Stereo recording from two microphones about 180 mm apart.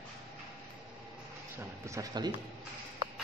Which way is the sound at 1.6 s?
20° right (ahead or behind).